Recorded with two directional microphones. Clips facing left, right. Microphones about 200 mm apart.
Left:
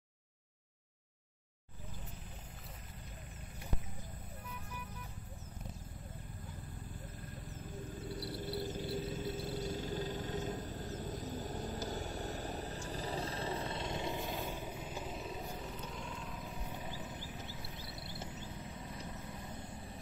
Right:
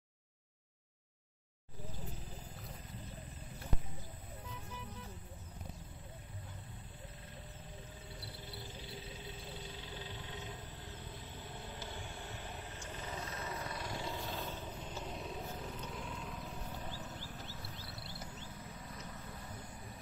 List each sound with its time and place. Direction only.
8.0 s music: 40° left (ahead or behind); by 16.5 s centre (ahead or behind)
16.7 s horse: 15° left (ahead or behind)